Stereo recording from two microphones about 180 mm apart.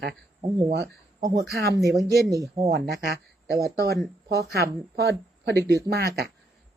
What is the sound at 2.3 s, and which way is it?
Speech, 20° right (ahead or behind).